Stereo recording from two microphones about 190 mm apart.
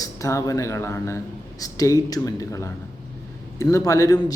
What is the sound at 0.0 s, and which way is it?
A man's voice, 15° left (ahead or behind).